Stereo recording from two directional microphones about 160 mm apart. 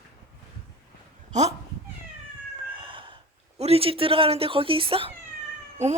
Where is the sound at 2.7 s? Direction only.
30° right (ahead or behind).